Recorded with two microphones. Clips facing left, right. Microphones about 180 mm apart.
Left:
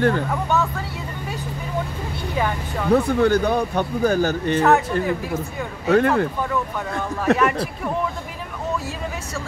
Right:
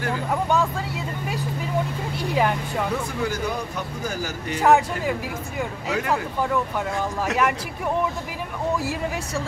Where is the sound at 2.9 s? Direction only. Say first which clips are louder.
Left 10 dB; 60° left (ahead or behind).